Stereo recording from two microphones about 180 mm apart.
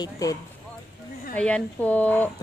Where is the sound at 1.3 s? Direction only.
5° left (ahead or behind).